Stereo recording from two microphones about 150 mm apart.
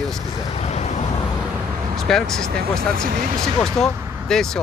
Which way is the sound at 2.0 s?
5° left (ahead or behind).